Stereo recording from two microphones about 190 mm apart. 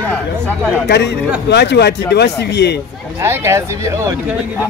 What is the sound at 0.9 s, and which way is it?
Speech, 60° left (ahead or behind).